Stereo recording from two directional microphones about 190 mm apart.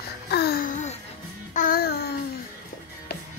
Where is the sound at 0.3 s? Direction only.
55° left (ahead or behind).